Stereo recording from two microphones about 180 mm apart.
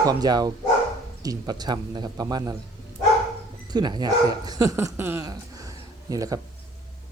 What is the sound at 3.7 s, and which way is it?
Speech, 25° right (ahead or behind).